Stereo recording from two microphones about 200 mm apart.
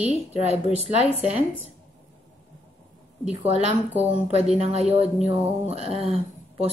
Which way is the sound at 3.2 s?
30° right (ahead or behind).